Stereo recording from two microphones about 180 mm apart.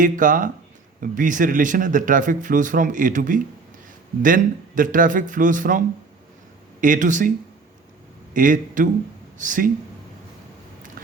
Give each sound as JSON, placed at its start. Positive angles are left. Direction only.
{"t": 0.0, "sound": "speech", "side_deg": -45}
{"t": 6.8, "sound": "speech", "side_deg": -45}